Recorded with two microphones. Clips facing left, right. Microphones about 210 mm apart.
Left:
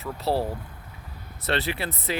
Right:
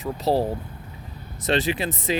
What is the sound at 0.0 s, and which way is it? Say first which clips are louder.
Speech: right 4 dB; 15° right (ahead or behind).